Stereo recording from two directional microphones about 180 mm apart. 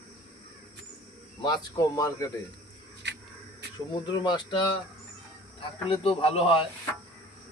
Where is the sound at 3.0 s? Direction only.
75° right (ahead or behind).